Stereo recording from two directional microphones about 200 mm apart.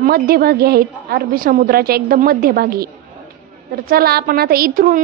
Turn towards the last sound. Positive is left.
turn(degrees=-45)  # may be behind; listen again after turning